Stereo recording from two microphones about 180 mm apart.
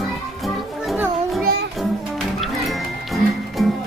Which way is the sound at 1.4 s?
60° right (ahead or behind).